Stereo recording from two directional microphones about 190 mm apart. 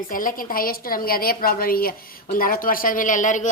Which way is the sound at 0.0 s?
45° left (ahead or behind).